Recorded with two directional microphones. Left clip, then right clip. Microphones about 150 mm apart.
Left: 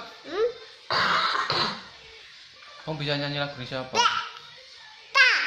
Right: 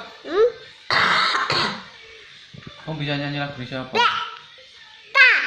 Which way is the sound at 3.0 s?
35° left (ahead or behind).